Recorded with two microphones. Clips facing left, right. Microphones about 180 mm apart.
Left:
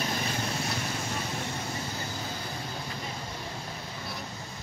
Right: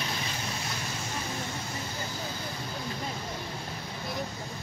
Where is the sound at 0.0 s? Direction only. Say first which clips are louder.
Left 3 dB; 50° left (ahead or behind).